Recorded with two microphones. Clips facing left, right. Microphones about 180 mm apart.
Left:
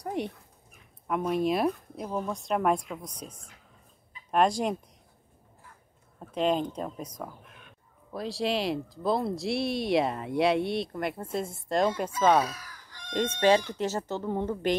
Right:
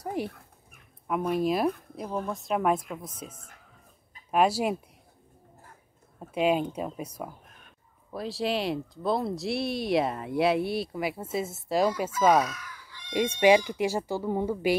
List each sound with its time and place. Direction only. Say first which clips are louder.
0.0 s speech: even; 5° right (ahead or behind)
6.1 s speech: right 2 dB; 10° right (ahead or behind)
7.4 s a sound: left 2 dB; 40° right (ahead or behind)
8.1 s speech: even; centre (ahead or behind)
12.4 s chicken: right 1 dB; 35° left (ahead or behind)
13.1 s speech: right 2 dB; 10° right (ahead or behind)